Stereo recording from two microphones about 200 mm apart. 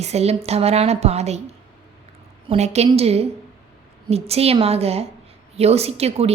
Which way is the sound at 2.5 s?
30° right (ahead or behind).